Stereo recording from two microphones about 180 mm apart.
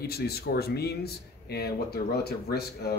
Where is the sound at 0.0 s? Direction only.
60° left (ahead or behind).